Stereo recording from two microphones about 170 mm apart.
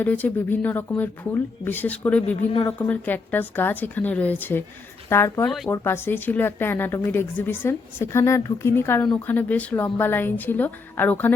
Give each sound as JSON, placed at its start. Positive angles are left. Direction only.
{"t": 0.0, "sound": "a woman's voice", "side_deg": 10}
{"t": 2.2, "sound": "speech", "side_deg": 35}
{"t": 2.6, "sound": "a woman's voice", "side_deg": 10}